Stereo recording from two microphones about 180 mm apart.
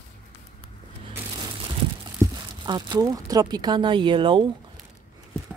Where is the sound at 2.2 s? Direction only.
25° right (ahead or behind).